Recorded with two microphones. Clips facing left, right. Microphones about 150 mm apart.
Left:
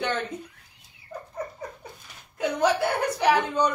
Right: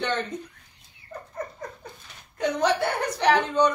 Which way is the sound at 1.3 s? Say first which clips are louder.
Even; 10° left (ahead or behind).